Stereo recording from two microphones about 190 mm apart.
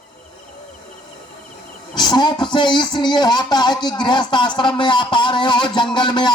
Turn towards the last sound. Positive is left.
turn(degrees=25)  # may be behind; listen again after turning